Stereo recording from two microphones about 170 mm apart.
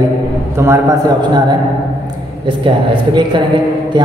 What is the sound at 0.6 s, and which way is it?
Speech, 15° right (ahead or behind).